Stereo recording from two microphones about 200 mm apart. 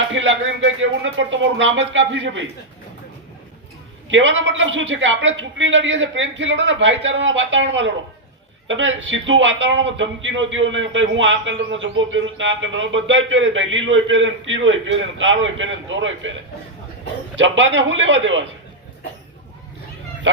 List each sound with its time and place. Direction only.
0.1 s a man's voice: 70° right (ahead or behind)
4.1 s a man's voice: 70° right (ahead or behind)
20.3 s a man's voice: 75° right (ahead or behind)